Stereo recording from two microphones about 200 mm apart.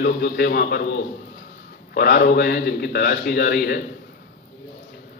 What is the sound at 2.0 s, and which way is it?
A man's voice, 50° left (ahead or behind).